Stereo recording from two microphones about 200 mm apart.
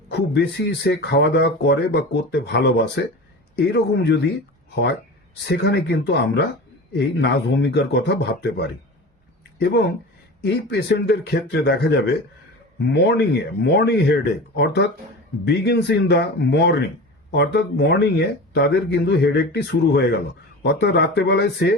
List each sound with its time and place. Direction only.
0.1 s speech: 55° left (ahead or behind)